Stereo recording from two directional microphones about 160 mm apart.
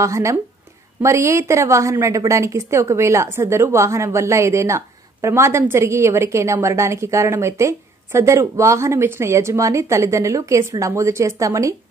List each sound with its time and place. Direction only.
0.0 s a woman's voice: 20° right (ahead or behind)